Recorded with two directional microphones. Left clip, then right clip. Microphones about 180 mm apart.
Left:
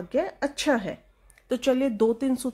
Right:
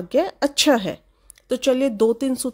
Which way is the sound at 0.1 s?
40° right (ahead or behind).